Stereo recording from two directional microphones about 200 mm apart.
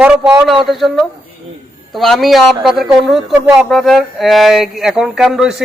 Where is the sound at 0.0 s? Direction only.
5° right (ahead or behind).